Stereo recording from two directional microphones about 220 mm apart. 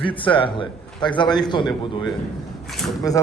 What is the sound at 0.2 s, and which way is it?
A man's voice, 20° left (ahead or behind).